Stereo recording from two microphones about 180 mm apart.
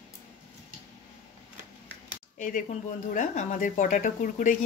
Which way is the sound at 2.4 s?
45° left (ahead or behind).